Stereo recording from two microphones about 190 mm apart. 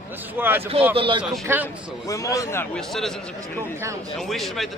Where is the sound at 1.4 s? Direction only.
10° right (ahead or behind).